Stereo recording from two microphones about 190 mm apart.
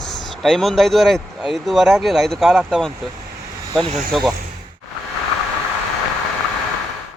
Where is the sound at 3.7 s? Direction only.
25° right (ahead or behind).